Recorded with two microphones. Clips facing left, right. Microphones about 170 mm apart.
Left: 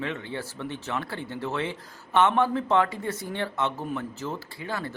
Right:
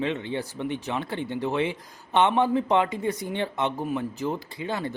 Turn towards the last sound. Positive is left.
turn(degrees=-20)  # may be behind; listen again after turning